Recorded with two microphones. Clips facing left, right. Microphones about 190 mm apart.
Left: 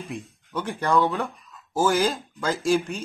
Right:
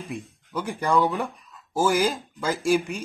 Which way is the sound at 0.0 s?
5° right (ahead or behind).